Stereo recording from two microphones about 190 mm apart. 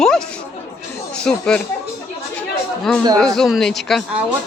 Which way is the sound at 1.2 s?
5° left (ahead or behind).